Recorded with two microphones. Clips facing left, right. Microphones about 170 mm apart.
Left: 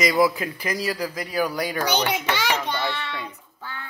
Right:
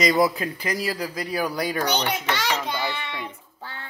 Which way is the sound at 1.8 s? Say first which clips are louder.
Left 1 dB; 10° left (ahead or behind).